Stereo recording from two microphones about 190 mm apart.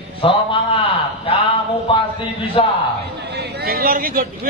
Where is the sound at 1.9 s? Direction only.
25° left (ahead or behind).